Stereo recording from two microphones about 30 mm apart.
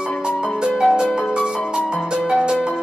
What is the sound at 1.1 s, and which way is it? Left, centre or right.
Music, right.